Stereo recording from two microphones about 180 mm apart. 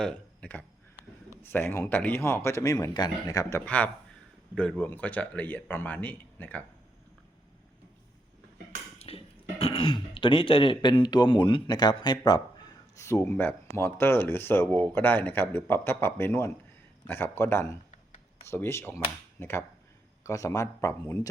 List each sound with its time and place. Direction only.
0.0 s speech: 5° left (ahead or behind)
3.7 s speech: 10° left (ahead or behind)
9.0 s speech: 35° left (ahead or behind); by 21.2 s 15° left (ahead or behind)